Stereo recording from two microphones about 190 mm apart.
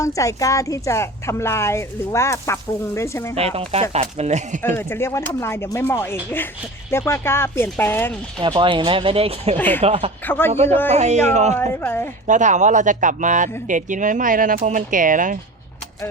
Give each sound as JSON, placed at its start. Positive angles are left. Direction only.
{"t": 0.0, "sound": "speech", "side_deg": 15}
{"t": 3.3, "sound": "speech", "side_deg": -30}
{"t": 4.6, "sound": "speech", "side_deg": 15}
{"t": 8.4, "sound": "speech", "side_deg": -25}
{"t": 9.6, "sound": "speech", "side_deg": 10}
{"t": 9.8, "sound": "speech", "side_deg": -30}
{"t": 10.2, "sound": "speech", "side_deg": 10}
{"t": 10.5, "sound": "speech", "side_deg": -35}
{"t": 11.7, "sound": "speech", "side_deg": 10}
{"t": 12.3, "sound": "speech", "side_deg": -40}